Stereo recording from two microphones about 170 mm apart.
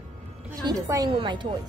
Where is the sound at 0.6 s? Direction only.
20° right (ahead or behind).